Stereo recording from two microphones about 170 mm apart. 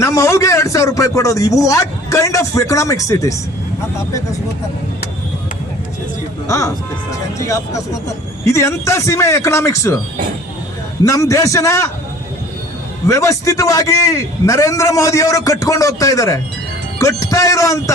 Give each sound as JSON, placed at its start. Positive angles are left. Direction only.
{"t": 0.0, "sound": "a man's voice", "side_deg": 15}
{"t": 6.5, "sound": "speech", "side_deg": 20}
{"t": 11.0, "sound": "speech", "side_deg": 20}
{"t": 13.1, "sound": "a man's voice", "side_deg": 20}